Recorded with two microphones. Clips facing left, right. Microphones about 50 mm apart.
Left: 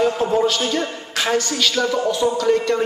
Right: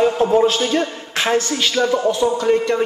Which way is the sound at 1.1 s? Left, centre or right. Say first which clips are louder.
Right 2 dB; right.